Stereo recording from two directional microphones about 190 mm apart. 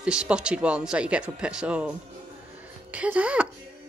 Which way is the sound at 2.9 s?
5° right (ahead or behind).